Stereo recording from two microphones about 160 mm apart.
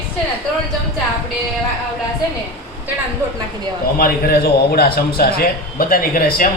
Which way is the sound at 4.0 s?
65° left (ahead or behind).